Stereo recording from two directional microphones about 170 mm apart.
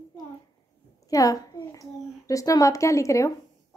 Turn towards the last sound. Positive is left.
turn(degrees=20)  # may be behind; listen again after turning